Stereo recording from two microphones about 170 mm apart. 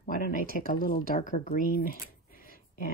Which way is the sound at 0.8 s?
60° left (ahead or behind).